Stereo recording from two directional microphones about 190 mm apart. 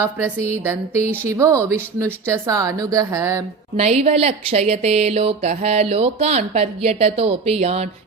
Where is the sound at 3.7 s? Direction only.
35° right (ahead or behind).